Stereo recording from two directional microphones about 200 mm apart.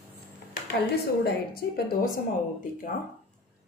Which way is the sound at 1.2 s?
50° left (ahead or behind).